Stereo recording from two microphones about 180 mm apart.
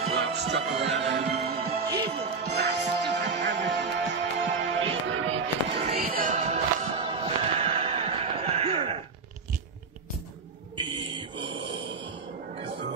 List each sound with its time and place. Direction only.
0.1 s music: 70° right (ahead or behind)
1.4 s music: 60° right (ahead or behind); by 5.9 s 90° right
5.9 s music: 50° right (ahead or behind)
6.3 s music: 40° right (ahead or behind)
10.8 s a sound: 25° right (ahead or behind)
11.5 s a sound: 90° right